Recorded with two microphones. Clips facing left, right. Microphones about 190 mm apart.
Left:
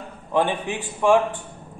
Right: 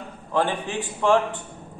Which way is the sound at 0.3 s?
15° left (ahead or behind).